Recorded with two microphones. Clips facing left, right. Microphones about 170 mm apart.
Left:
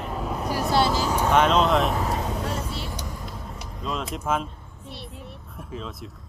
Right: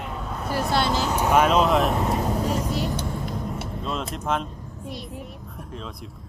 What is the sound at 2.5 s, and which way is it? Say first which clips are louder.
Vehicle: right 6 dB; 40° right (ahead or behind).